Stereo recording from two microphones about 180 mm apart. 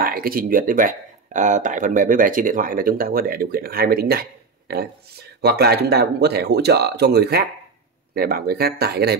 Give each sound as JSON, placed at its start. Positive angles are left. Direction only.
{"t": 0.0, "sound": "speech", "side_deg": -55}